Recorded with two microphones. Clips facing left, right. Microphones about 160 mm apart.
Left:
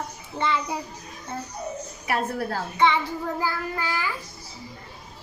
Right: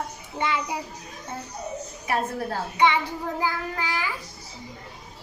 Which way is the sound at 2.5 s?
15° right (ahead or behind).